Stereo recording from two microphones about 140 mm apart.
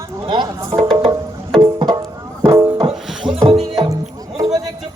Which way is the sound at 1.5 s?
30° right (ahead or behind).